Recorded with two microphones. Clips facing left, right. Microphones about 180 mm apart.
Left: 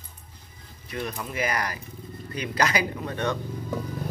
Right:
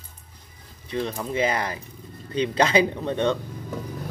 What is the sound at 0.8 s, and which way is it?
Speech, 30° right (ahead or behind).